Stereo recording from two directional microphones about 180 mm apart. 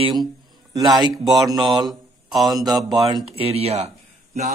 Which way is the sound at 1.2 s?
Centre (ahead or behind).